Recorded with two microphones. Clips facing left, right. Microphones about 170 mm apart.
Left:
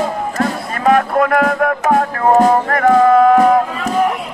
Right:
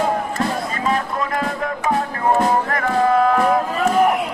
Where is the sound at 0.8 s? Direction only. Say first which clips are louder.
Left 11 dB; 60° left (ahead or behind).